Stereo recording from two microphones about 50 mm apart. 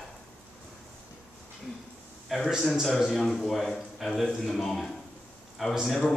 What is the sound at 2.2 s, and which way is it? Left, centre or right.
A man's voice, centre.